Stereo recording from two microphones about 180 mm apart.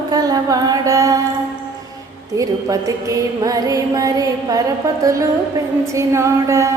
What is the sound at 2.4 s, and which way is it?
Music, 20° right (ahead or behind).